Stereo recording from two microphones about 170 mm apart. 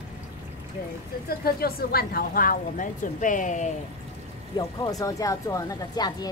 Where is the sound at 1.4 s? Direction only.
65° left (ahead or behind); by 3.7 s 45° left (ahead or behind).